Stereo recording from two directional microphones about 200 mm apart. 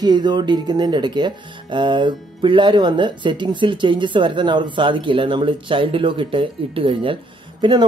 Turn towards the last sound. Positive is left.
turn(degrees=-25)  # may be behind; listen again after turning